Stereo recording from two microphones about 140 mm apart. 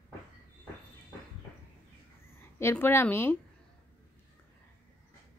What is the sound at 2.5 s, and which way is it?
Speech, 15° left (ahead or behind).